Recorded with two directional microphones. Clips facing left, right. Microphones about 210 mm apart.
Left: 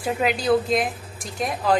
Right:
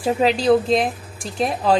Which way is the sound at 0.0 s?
25° right (ahead or behind).